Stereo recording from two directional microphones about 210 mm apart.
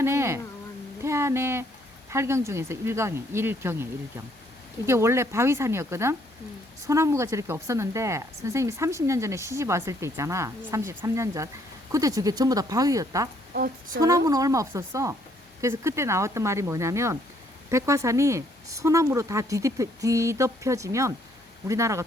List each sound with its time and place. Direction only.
0.0 s a woman's voice: 10° right (ahead or behind)
4.9 s a woman's voice: 10° right (ahead or behind)
13.5 s a woman's voice: 45° right (ahead or behind)
14.3 s a woman's voice: 15° right (ahead or behind)